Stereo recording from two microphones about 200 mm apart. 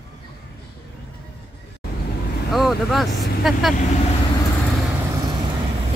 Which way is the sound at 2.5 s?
Centre (ahead or behind).